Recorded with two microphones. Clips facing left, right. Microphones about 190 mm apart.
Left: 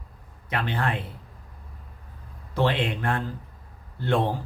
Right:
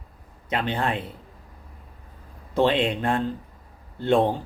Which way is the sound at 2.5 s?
20° right (ahead or behind).